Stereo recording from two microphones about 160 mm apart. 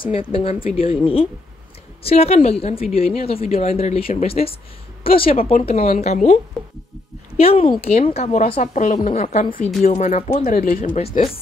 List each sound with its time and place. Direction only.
0.0 s a woman's voice: 35° left (ahead or behind)
7.3 s a woman's voice: 35° left (ahead or behind); by 10.9 s 55° left (ahead or behind)